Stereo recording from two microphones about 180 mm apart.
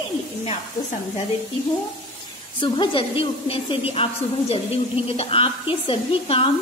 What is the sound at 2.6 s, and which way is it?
A woman's voice, 25° left (ahead or behind).